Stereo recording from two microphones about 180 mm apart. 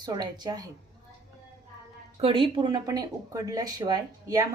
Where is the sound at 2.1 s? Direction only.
30° right (ahead or behind).